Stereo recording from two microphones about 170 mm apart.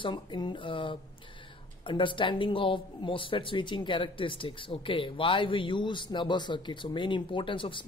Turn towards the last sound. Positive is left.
turn(degrees=30)  # may be behind; listen again after turning